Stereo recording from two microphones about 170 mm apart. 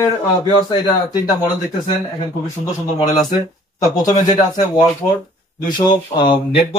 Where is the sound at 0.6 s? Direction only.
25° left (ahead or behind).